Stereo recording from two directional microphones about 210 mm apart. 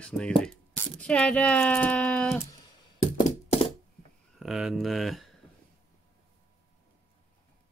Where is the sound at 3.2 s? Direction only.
30° left (ahead or behind).